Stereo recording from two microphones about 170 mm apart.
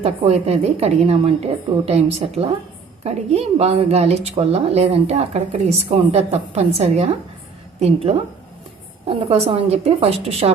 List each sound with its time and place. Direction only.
0.0 s a woman's voice: 40° right (ahead or behind)